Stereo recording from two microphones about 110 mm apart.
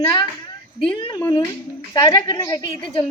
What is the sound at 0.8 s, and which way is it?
Speech, 50° left (ahead or behind).